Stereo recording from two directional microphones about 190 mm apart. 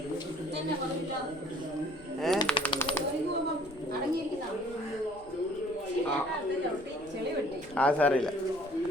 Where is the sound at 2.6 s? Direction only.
25° left (ahead or behind).